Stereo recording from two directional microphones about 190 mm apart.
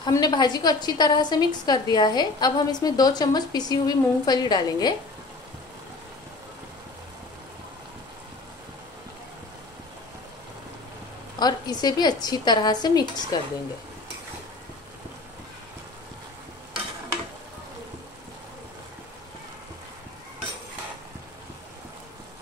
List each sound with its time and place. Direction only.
0.0 s a woman's voice: 20° left (ahead or behind)
11.3 s a woman's voice: 20° left (ahead or behind)